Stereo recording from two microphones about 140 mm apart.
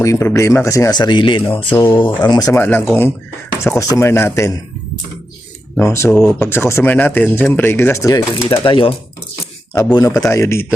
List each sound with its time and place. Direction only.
0.0 s speech: 20° left (ahead or behind); by 1.6 s 40° left (ahead or behind)
1.7 s speech: 15° left (ahead or behind)
2.0 s speech: 35° left (ahead or behind)
2.5 s speech: 15° left (ahead or behind)
5.7 s speech: 20° left (ahead or behind)
8.6 s speech: 40° left (ahead or behind)
9.7 s speech: 25° left (ahead or behind)